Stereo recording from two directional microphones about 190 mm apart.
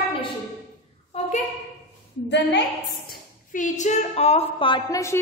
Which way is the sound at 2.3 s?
65° left (ahead or behind).